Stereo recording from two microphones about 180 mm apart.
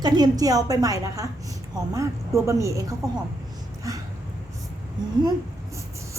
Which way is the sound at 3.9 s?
20° right (ahead or behind).